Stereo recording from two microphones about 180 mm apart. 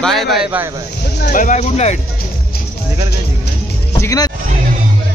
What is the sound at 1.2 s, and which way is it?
Speech, 50° left (ahead or behind).